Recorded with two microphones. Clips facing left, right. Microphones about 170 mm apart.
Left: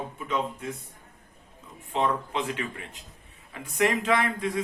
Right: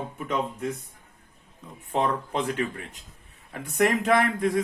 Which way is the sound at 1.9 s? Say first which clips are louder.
Right 1 dB; 45° right (ahead or behind).